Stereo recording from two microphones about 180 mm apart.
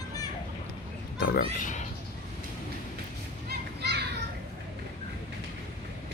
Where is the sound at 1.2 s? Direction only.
55° left (ahead or behind).